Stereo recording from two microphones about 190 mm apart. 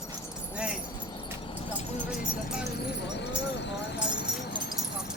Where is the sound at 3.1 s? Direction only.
65° left (ahead or behind).